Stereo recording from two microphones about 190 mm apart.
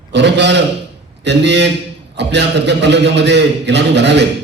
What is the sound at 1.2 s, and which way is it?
A man's voice, 65° right (ahead or behind).